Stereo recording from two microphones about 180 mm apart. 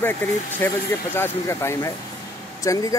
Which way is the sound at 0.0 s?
10° left (ahead or behind).